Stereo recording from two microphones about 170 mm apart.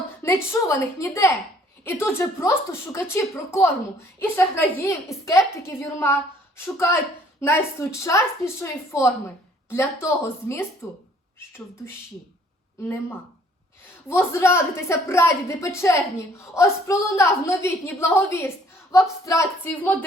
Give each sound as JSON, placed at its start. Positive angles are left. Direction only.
{"t": 0.2, "sound": "a woman's voice", "side_deg": 15}
{"t": 7.4, "sound": "a woman's voice", "side_deg": 15}
{"t": 14.1, "sound": "a woman's voice", "side_deg": 15}